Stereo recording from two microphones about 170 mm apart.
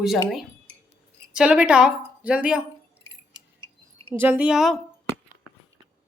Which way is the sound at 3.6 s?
35° right (ahead or behind).